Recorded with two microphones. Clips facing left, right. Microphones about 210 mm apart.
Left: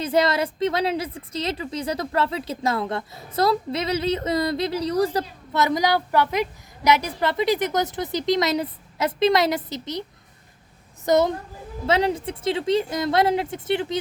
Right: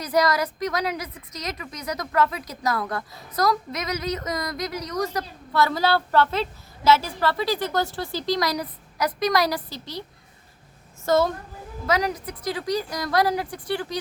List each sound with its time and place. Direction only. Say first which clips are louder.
0.0 s a woman's voice: left 1 dB; 25° left (ahead or behind)
5.5 s a woman's voice: left 1 dB; 20° left (ahead or behind)
11.0 s a woman's voice: left 2 dB; 20° left (ahead or behind)